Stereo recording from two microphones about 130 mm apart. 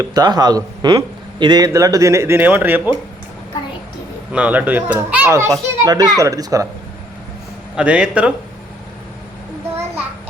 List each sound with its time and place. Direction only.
0.0 s speech: 30° right (ahead or behind); by 2.9 s 15° right (ahead or behind)
4.3 s speech: 10° right (ahead or behind)
5.3 s speech: 25° right (ahead or behind)
7.8 s speech: 10° right (ahead or behind)